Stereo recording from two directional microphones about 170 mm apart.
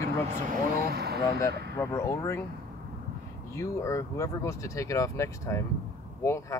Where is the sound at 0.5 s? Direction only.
65° right (ahead or behind).